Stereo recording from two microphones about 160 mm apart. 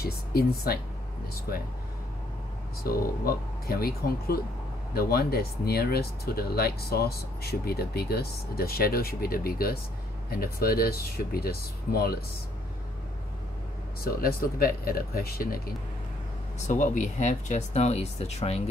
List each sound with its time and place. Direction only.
0.0 s speech: 70° left (ahead or behind)
2.8 s speech: 70° left (ahead or behind)
14.0 s speech: 65° left (ahead or behind)
16.6 s speech: 50° left (ahead or behind)